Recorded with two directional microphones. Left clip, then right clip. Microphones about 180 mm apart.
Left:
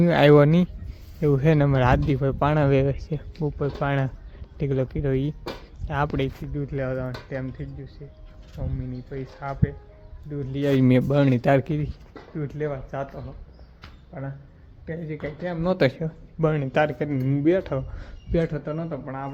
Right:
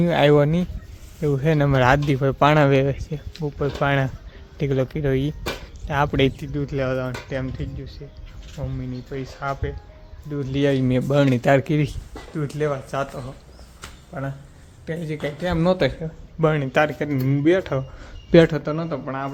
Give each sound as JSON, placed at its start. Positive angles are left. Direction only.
{"t": 0.0, "sound": "speech", "side_deg": 10}
{"t": 6.5, "sound": "speech", "side_deg": -20}
{"t": 10.8, "sound": "speech", "side_deg": 20}
{"t": 11.1, "sound": "speech", "side_deg": 5}
{"t": 12.4, "sound": "a man's voice", "side_deg": -15}
{"t": 15.8, "sound": "speech", "side_deg": 20}
{"t": 16.4, "sound": "speech", "side_deg": -5}
{"t": 18.3, "sound": "a man's voice", "side_deg": -55}
{"t": 18.6, "sound": "a man's voice", "side_deg": -20}